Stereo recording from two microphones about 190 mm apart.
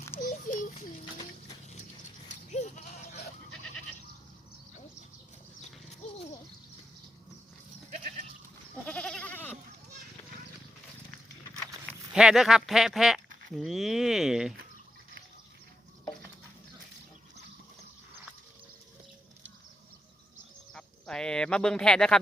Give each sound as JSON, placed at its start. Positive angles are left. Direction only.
{"t": 0.2, "sound": "a sound", "side_deg": 45}
{"t": 2.3, "sound": "goat", "side_deg": 40}
{"t": 7.9, "sound": "goat", "side_deg": -40}
{"t": 8.9, "sound": "goat", "side_deg": 5}
{"t": 12.1, "sound": "speech", "side_deg": 0}
{"t": 20.7, "sound": "a sound", "side_deg": 5}